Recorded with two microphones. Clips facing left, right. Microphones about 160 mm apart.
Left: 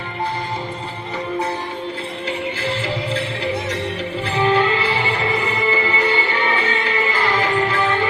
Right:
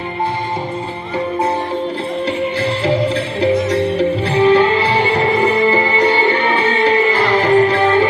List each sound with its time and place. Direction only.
4.3 s music: 40° right (ahead or behind)